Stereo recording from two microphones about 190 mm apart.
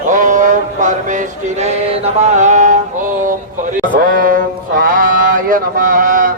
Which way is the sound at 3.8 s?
45° right (ahead or behind).